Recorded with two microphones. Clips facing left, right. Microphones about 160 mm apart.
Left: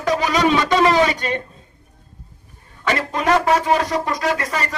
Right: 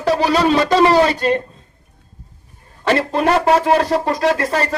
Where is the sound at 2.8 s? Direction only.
35° right (ahead or behind).